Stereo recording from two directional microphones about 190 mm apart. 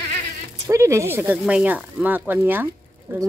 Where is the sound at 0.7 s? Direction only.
15° right (ahead or behind).